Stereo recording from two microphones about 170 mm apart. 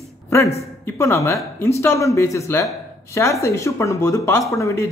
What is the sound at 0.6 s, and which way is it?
Speech, 15° left (ahead or behind).